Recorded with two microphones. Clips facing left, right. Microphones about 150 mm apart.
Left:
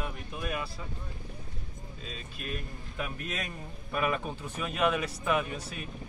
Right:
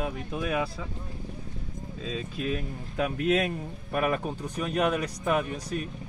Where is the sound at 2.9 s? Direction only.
80° right.